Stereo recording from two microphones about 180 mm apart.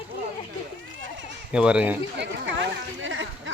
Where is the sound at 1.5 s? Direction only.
5° right (ahead or behind).